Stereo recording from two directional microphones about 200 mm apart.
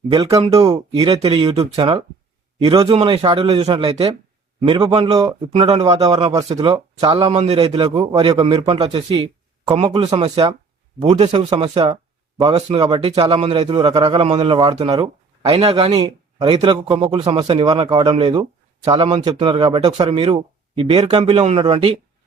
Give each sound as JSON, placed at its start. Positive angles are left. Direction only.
{"t": 0.1, "sound": "speech", "side_deg": -25}